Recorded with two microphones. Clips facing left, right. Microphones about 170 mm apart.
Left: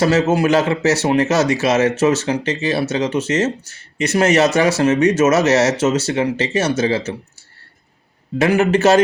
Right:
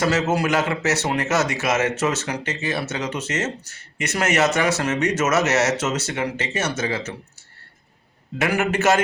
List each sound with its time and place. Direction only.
0.0 s speech: 30° left (ahead or behind)
8.4 s speech: 30° left (ahead or behind)